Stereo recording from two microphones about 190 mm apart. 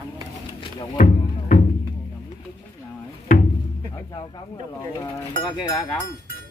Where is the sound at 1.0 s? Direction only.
45° left (ahead or behind).